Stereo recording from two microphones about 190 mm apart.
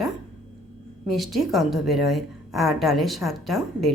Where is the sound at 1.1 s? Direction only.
Centre (ahead or behind).